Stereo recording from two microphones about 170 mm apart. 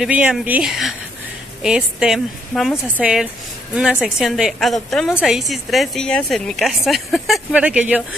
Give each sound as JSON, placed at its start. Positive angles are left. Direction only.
{"t": 0.0, "sound": "a woman's voice", "side_deg": -5}